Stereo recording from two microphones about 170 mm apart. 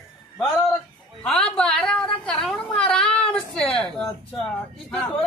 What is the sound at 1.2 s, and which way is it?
A woman's voice, 5° left (ahead or behind).